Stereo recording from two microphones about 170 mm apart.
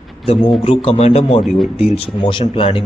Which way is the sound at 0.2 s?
35° left (ahead or behind).